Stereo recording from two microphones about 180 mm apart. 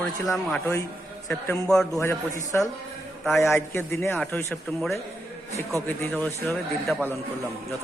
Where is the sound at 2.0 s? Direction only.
15° left (ahead or behind).